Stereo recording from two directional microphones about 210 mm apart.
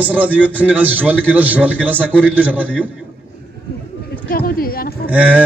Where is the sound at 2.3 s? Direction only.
5° right (ahead or behind).